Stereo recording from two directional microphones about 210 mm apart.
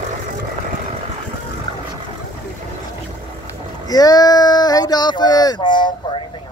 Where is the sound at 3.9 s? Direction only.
20° left (ahead or behind).